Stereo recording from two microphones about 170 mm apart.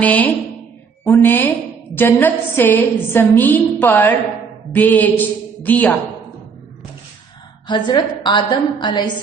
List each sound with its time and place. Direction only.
0.0 s a woman's voice: 10° left (ahead or behind)
7.7 s a woman's voice: 25° left (ahead or behind)